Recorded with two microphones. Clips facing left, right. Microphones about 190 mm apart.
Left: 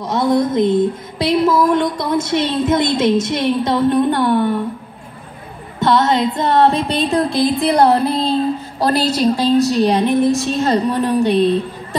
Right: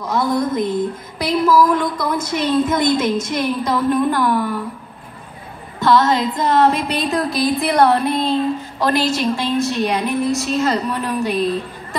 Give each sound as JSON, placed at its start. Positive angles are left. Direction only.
{"t": 0.1, "sound": "speech", "side_deg": 25}
{"t": 5.8, "sound": "music", "side_deg": 25}